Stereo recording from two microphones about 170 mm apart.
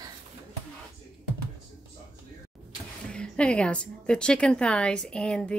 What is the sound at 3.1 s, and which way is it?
A woman's voice, 5° left (ahead or behind).